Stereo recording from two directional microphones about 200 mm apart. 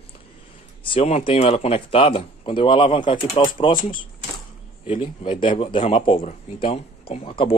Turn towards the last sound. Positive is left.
turn(degrees=25)  # may be behind; listen again after turning